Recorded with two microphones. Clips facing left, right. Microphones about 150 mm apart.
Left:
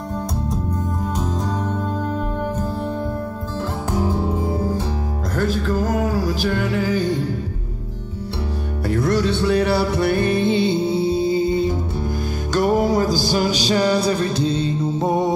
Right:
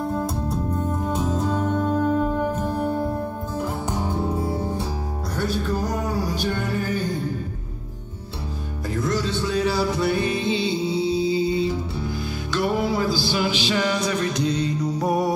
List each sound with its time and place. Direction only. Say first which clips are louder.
1.1 s music: right 2 dB; centre (ahead or behind)
4.3 s music: left 2 dB; 20° left (ahead or behind)
5.3 s music: left 4 dB; 90° left
8.8 s music: left 6 dB; 65° left (ahead or behind); by 15.3 s 25° left (ahead or behind)